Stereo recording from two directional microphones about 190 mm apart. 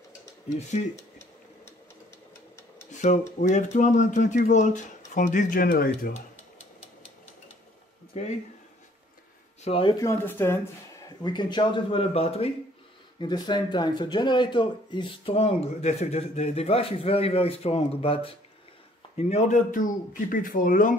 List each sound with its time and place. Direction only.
2.9 s speech: 40° left (ahead or behind)
9.7 s speech: 25° left (ahead or behind)
11.2 s a man's voice: 25° left (ahead or behind); by 20.9 s 45° left (ahead or behind)